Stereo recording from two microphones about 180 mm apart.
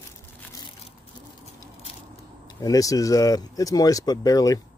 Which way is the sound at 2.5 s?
20° left (ahead or behind).